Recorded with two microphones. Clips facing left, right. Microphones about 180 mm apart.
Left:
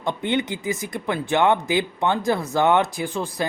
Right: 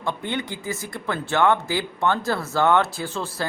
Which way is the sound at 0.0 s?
20° left (ahead or behind).